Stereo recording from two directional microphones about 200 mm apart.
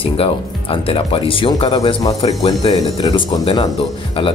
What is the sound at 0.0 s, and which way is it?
Speech, 25° left (ahead or behind).